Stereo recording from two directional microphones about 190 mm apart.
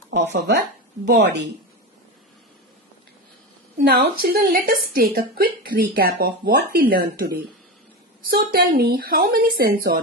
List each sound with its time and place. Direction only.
0.3 s speech: 60° right (ahead or behind)
3.8 s speech: 50° right (ahead or behind)